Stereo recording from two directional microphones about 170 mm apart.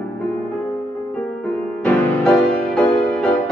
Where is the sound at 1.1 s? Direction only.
10° left (ahead or behind).